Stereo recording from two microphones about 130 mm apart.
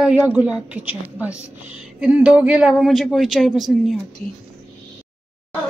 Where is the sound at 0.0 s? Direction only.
10° right (ahead or behind).